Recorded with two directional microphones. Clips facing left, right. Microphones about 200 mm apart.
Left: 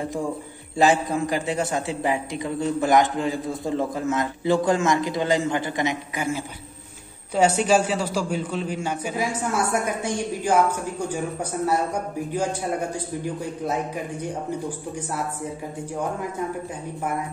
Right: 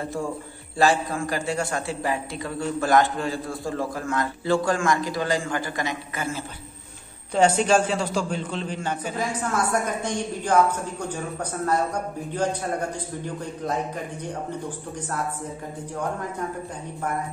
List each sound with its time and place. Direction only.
0.0 s a man's voice: 15° left (ahead or behind)
12.9 s a man's voice: 10° left (ahead or behind)